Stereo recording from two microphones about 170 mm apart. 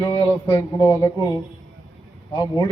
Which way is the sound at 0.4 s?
15° left (ahead or behind).